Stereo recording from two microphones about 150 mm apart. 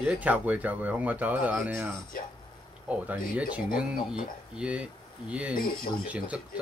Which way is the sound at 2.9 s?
10° right (ahead or behind).